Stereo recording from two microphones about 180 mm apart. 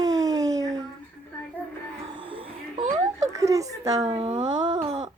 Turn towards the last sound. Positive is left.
turn(degrees=-30)  # may be behind; listen again after turning